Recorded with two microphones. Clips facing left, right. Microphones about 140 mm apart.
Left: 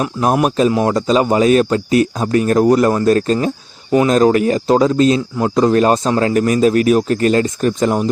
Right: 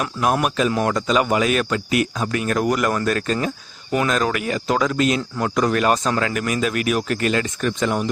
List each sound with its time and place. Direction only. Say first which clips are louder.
0.0 s speech: left 5 dB; 30° left (ahead or behind)